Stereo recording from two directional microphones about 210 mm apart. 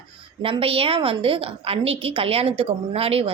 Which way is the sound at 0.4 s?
25° right (ahead or behind).